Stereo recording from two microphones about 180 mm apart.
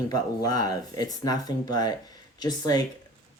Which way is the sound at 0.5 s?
20° left (ahead or behind).